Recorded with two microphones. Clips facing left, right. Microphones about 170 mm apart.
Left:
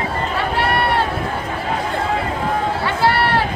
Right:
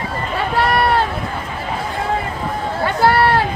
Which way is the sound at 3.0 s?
45° right (ahead or behind).